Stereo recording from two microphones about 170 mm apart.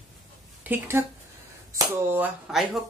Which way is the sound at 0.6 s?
15° right (ahead or behind).